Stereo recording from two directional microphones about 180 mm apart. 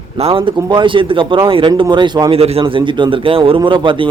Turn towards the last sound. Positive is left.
turn(degrees=-25)  # may be behind; listen again after turning